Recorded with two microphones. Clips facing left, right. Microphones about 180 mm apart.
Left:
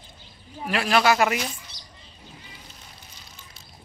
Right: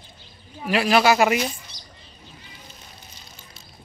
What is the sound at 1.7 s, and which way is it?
Rodents, 15° right (ahead or behind).